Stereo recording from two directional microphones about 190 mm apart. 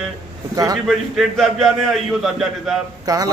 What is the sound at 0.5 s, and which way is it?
Speech, 20° right (ahead or behind).